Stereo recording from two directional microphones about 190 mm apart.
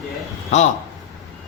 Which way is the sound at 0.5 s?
35° left (ahead or behind).